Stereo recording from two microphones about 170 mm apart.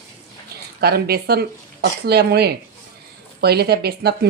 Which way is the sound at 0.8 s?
65° right (ahead or behind).